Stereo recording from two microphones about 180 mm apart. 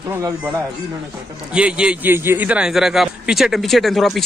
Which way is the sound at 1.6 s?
5° right (ahead or behind).